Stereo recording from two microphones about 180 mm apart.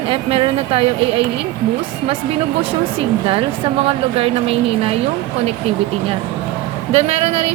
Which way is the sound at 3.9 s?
35° right (ahead or behind).